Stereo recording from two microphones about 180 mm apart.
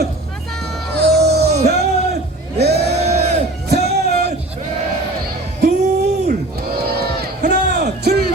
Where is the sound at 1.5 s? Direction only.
40° right (ahead or behind).